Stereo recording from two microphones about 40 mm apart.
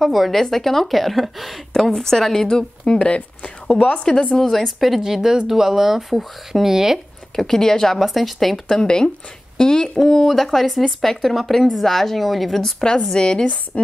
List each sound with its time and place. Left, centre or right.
0.0 s a woman's voice: centre
1.7 s a woman's voice: centre
4.4 s speech: centre
7.3 s a woman's voice: centre
8.6 s a woman's voice: centre
12.9 s speech: centre